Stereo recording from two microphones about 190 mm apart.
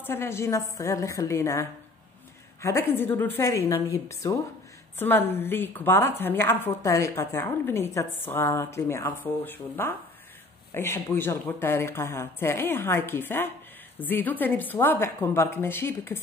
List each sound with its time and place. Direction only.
0.0 s a woman's voice: 10° left (ahead or behind)